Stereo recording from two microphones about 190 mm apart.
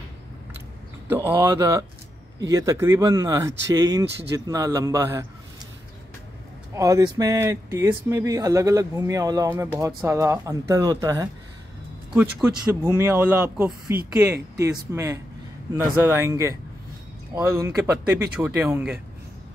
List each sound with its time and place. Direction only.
1.0 s speech: 10° right (ahead or behind)
6.7 s speech: 15° right (ahead or behind)
12.1 s speech: 5° right (ahead or behind)